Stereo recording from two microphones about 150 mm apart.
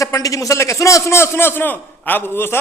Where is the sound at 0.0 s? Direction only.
20° left (ahead or behind).